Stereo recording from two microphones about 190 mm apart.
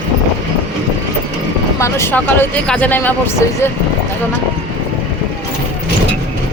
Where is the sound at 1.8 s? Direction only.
10° left (ahead or behind).